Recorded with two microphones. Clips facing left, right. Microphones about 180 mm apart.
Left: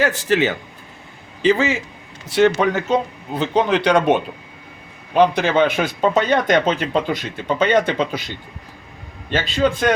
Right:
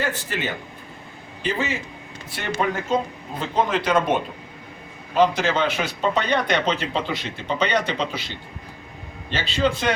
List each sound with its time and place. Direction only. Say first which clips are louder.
0.0 s a man's voice: left 9 dB; 90° left; by 4.0 s 75° left (ahead or behind)
5.1 s speech: left 4 dB; 60° left (ahead or behind)
9.3 s speech: left 4 dB; 50° left (ahead or behind)